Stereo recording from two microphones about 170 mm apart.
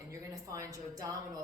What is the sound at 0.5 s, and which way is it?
Speech, 20° right (ahead or behind).